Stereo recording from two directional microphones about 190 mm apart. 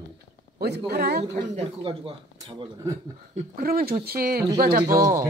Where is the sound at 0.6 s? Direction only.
55° right (ahead or behind).